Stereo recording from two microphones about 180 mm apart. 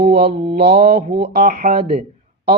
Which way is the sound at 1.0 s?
35° right (ahead or behind).